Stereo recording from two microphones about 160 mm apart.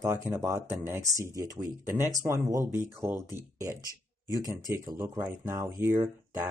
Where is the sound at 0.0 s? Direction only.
20° right (ahead or behind).